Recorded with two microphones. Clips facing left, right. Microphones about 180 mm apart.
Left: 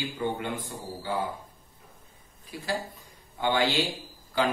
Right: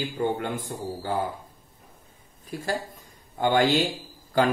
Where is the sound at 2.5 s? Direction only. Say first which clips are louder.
Right 3 dB; 45° right (ahead or behind).